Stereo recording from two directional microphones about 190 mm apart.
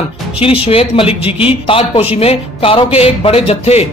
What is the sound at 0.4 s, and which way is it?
Speech, 30° left (ahead or behind).